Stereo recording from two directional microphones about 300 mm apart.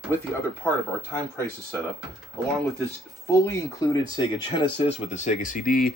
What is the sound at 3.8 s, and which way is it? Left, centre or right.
Speech, centre.